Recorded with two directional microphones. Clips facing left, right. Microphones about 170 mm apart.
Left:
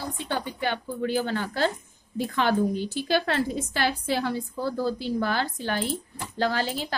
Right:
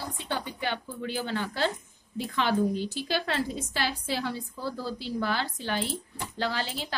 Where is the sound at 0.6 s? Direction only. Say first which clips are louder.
Left 5 dB; 50° left (ahead or behind).